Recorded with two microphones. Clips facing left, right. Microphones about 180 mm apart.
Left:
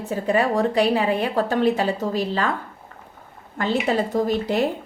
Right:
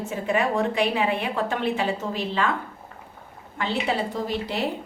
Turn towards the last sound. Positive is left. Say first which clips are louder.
# left 7 dB
turn(degrees=45)  # may be behind; listen again after turning